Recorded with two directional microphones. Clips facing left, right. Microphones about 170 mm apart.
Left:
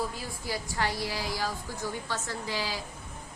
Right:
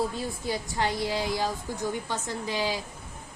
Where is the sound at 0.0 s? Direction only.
25° right (ahead or behind).